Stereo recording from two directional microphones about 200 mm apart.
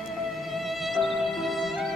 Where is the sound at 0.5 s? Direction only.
Centre (ahead or behind).